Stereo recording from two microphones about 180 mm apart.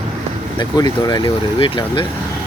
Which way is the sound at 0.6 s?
20° left (ahead or behind).